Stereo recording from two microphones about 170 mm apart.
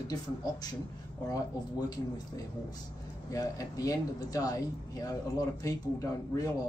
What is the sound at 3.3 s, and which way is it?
Speech, 20° left (ahead or behind).